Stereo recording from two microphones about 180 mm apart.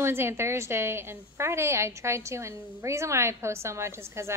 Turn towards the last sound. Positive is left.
turn(degrees=-15)  # may be behind; listen again after turning